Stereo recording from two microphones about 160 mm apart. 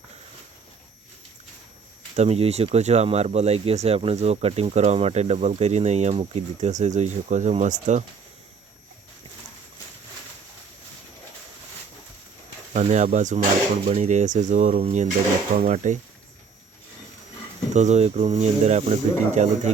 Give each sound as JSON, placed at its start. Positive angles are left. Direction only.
{"t": 2.1, "sound": "speech", "side_deg": -40}
{"t": 12.7, "sound": "speech", "side_deg": -50}
{"t": 17.7, "sound": "speech", "side_deg": -45}